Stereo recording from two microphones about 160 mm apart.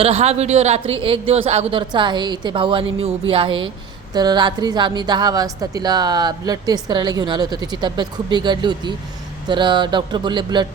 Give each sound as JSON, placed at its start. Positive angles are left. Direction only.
{"t": 0.0, "sound": "a woman's voice", "side_deg": -40}